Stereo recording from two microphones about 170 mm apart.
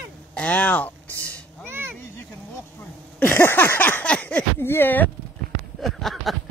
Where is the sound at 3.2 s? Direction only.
15° left (ahead or behind).